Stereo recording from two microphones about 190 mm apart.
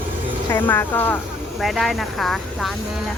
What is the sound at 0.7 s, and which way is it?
Speech, 10° left (ahead or behind).